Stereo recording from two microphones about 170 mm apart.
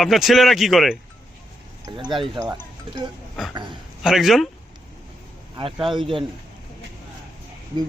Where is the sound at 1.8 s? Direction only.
25° right (ahead or behind).